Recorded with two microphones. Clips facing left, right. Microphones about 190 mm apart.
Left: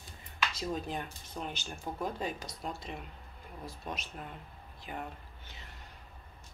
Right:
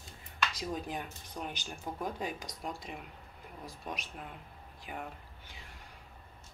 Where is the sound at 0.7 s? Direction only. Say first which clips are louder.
Left 1 dB; 10° right (ahead or behind).